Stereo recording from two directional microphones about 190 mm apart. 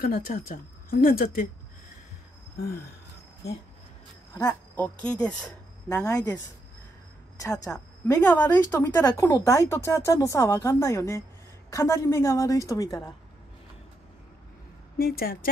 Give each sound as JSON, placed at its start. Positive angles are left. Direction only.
{"t": 0.0, "sound": "speech", "side_deg": 50}
{"t": 4.3, "sound": "speech", "side_deg": 15}
{"t": 5.9, "sound": "speech", "side_deg": 15}
{"t": 7.3, "sound": "speech", "side_deg": 15}
{"t": 15.0, "sound": "speech", "side_deg": 50}